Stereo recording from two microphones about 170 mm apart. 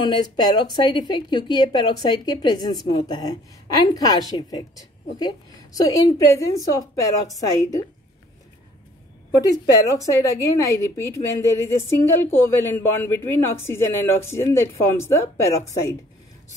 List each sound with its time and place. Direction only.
0.0 s a woman's voice: 25° left (ahead or behind)
9.4 s a woman's voice: 20° left (ahead or behind)